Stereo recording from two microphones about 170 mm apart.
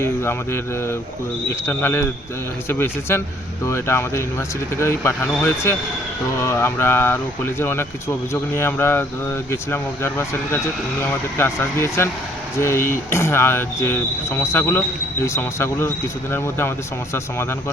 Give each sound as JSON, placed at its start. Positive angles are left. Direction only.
{"t": 0.0, "sound": "speech", "side_deg": 15}